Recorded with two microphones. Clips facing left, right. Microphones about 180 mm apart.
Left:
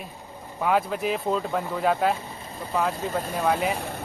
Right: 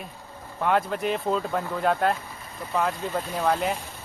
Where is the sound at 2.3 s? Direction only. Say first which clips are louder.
Left 2 dB; 30° left (ahead or behind).